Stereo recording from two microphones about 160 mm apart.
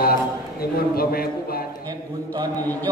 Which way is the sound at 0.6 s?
70° left (ahead or behind).